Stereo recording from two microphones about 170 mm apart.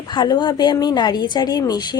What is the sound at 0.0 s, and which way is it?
Speech, 25° left (ahead or behind).